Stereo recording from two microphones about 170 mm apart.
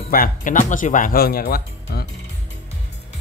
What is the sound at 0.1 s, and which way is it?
Speech, 55° left (ahead or behind).